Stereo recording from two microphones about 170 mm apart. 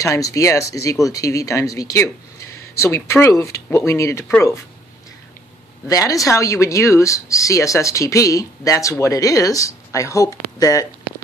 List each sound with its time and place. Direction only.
0.0 s speech: 20° left (ahead or behind)
5.9 s speech: 20° left (ahead or behind)